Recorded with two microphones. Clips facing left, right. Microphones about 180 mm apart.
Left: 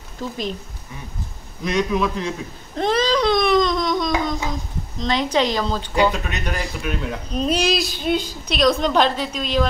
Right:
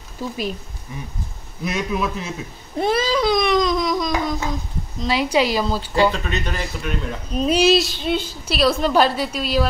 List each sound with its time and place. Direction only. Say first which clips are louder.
0.2 s a woman's voice: right 1 dB; 10° right (ahead or behind)
1.6 s baby cry: left 3 dB; 5° right (ahead or behind)
4.9 s a woman's voice: right 1 dB; 5° right (ahead or behind)
6.1 s a woman's voice: right 1 dB; 10° left (ahead or behind); by 9.7 s 5° right (ahead or behind)